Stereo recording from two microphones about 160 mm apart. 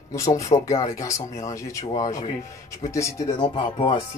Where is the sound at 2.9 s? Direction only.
20° left (ahead or behind).